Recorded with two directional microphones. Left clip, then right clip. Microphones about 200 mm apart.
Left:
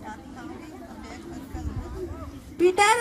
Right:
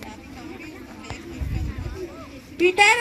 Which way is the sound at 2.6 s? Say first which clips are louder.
Right 3 dB; 20° right (ahead or behind).